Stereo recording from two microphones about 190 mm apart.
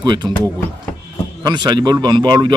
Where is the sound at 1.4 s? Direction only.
20° right (ahead or behind).